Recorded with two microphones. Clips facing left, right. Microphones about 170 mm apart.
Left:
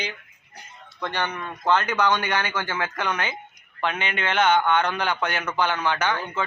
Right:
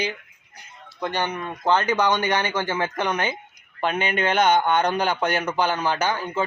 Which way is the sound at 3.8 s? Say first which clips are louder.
Right 4 dB; 45° right (ahead or behind).